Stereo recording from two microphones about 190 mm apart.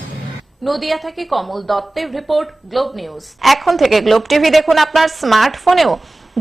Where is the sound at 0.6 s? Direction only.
Centre (ahead or behind).